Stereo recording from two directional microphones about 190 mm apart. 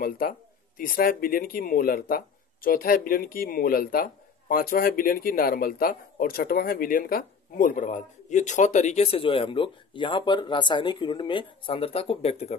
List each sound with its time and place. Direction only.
0.0 s speech: 50° left (ahead or behind); by 12.5 s 30° left (ahead or behind)